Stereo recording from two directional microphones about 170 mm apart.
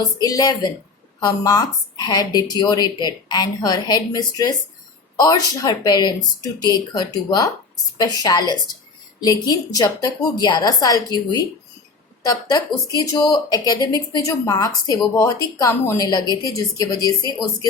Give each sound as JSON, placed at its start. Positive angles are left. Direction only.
{"t": 0.0, "sound": "speech", "side_deg": 25}